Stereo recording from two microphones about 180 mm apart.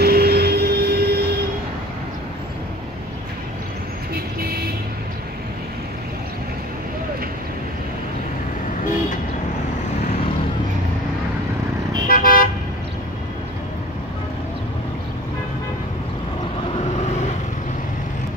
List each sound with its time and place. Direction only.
0.0 s vehicle: 60° right (ahead or behind)
4.1 s vehicle: 60° right (ahead or behind)
12.1 s car: 50° left (ahead or behind)